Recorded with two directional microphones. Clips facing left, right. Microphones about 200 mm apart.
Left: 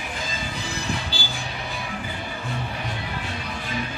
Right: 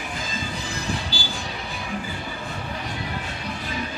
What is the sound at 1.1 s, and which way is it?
Train, 25° left (ahead or behind).